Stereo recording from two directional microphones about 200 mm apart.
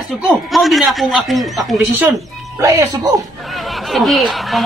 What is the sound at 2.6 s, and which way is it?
Speech, 15° right (ahead or behind).